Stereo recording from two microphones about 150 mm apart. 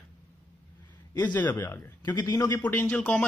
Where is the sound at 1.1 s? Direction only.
10° left (ahead or behind).